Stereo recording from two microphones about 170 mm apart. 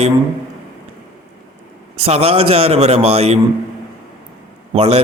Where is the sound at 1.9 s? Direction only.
35° right (ahead or behind).